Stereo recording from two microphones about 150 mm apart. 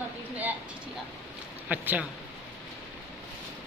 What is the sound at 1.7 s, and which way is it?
Speech, 10° right (ahead or behind).